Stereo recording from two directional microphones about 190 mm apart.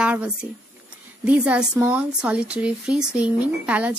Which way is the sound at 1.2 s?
5° right (ahead or behind).